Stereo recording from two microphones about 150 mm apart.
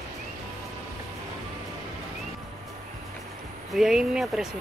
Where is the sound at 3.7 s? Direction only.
5° right (ahead or behind).